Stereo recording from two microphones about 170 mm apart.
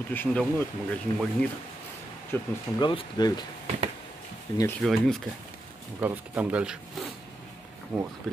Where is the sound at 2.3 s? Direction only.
10° left (ahead or behind).